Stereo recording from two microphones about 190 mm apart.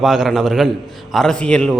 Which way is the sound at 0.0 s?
Centre (ahead or behind).